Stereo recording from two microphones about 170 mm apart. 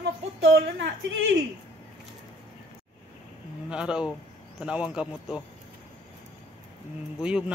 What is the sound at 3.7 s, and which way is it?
Speech, 5° right (ahead or behind).